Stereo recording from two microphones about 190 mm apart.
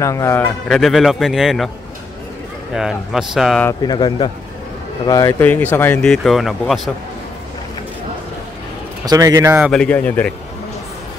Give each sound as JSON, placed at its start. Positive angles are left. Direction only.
{"t": 0.0, "sound": "speech", "side_deg": 15}
{"t": 0.7, "sound": "a man's voice", "side_deg": 0}
{"t": 2.7, "sound": "a man's voice", "side_deg": 0}
{"t": 3.8, "sound": "speech", "side_deg": 20}
{"t": 9.0, "sound": "a man's voice", "side_deg": -20}
{"t": 9.7, "sound": "speech", "side_deg": 5}